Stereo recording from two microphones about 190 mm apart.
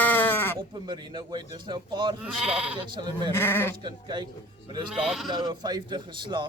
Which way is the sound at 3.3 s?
10° left (ahead or behind).